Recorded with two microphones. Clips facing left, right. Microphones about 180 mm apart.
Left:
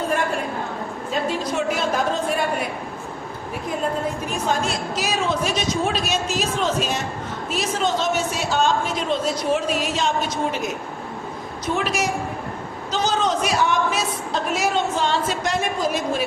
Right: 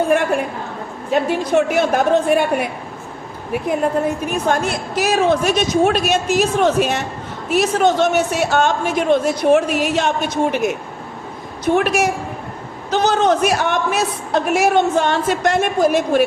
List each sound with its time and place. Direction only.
1.1 s a woman's voice: 60° right (ahead or behind)
4.3 s a woman's voice: 60° right (ahead or behind)